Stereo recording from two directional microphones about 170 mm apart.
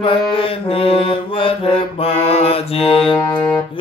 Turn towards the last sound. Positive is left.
turn(degrees=20)  # may be behind; listen again after turning